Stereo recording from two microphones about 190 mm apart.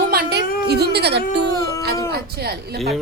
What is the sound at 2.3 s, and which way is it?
Speech, 55° right (ahead or behind).